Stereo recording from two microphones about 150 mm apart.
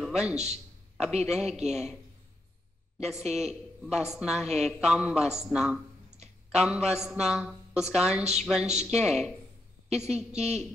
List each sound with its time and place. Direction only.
0.0 s a man's voice: 5° right (ahead or behind)
0.4 s a sound: 45° right (ahead or behind)
1.2 s a man's voice: centre (ahead or behind)
3.1 s a man's voice: centre (ahead or behind)
10.3 s a woman's voice: 50° right (ahead or behind)